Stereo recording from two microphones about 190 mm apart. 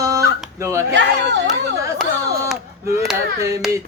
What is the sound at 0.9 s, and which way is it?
Speech, 70° right (ahead or behind).